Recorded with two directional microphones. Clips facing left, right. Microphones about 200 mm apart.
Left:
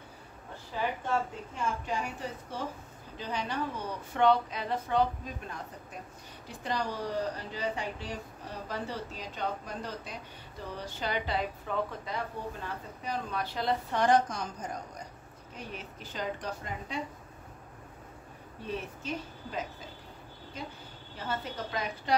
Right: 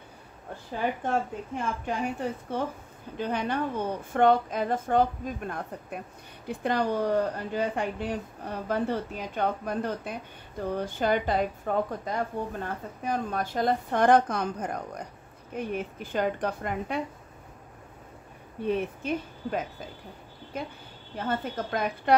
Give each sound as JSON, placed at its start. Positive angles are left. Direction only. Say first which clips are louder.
{"t": 0.7, "sound": "speech", "louder": "right 3 dB", "side_deg": -55}
{"t": 18.7, "sound": "speech", "louder": "right 8 dB", "side_deg": -55}